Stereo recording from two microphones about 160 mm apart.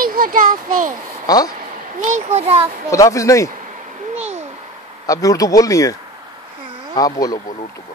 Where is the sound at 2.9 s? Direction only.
20° left (ahead or behind).